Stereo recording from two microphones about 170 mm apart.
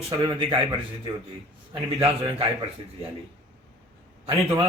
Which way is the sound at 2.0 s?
30° right (ahead or behind).